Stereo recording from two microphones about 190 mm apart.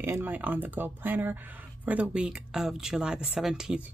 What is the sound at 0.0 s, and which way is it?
Speech, 10° right (ahead or behind).